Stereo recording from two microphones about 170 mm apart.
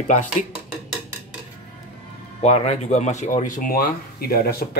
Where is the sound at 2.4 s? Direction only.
40° left (ahead or behind).